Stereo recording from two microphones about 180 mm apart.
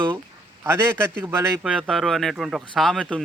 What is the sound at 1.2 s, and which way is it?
Speech, 15° right (ahead or behind).